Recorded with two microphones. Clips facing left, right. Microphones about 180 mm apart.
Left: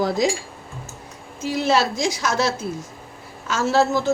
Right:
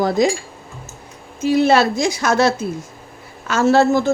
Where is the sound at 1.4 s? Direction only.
60° right (ahead or behind).